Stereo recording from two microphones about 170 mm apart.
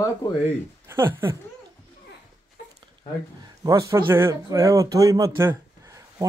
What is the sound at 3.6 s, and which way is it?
Speech, 20° right (ahead or behind).